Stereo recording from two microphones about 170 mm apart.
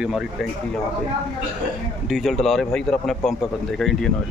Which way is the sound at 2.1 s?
Centre (ahead or behind).